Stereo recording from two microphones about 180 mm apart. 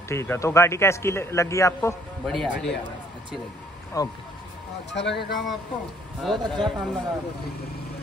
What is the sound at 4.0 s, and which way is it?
Speech, 20° left (ahead or behind).